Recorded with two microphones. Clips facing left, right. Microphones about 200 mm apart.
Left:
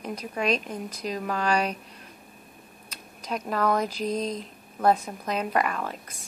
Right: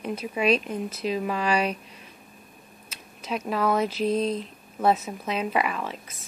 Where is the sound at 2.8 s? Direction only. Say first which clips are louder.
Right 1 dB; 5° right (ahead or behind).